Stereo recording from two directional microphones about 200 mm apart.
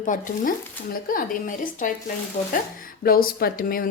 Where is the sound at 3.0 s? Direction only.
45° left (ahead or behind).